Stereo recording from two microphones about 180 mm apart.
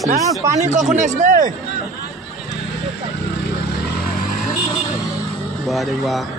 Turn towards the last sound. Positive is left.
turn(degrees=0)  # may be behind; listen again after turning